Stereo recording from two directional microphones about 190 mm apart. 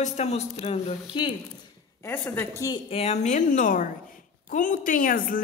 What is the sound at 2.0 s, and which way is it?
Speech, 10° left (ahead or behind).